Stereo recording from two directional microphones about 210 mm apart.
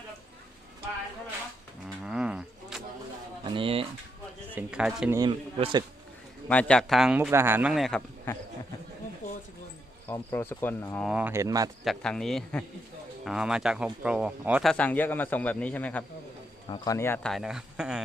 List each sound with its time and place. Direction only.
2.0 s a sound: 5° right (ahead or behind)
3.4 s a sound: 25° right (ahead or behind)
4.5 s speech: 5° right (ahead or behind)
5.1 s speech: 20° right (ahead or behind)
6.5 s speech: 5° left (ahead or behind)
10.1 s speech: 10° left (ahead or behind)
11.0 s speech: 5° right (ahead or behind)
11.9 s speech: centre (ahead or behind)
16.6 s speech: 20° left (ahead or behind)
17.3 s speech: 5° right (ahead or behind)